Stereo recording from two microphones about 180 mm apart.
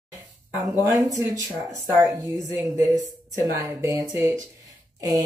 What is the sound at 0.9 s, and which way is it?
Speech, 20° right (ahead or behind).